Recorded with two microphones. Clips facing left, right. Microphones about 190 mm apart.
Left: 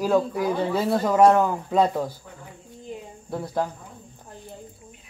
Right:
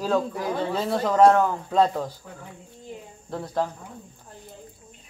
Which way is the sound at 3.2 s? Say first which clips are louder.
Even; 10° left (ahead or behind).